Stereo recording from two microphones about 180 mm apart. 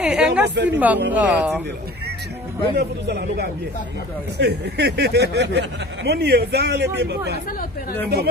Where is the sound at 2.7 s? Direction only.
65° right (ahead or behind).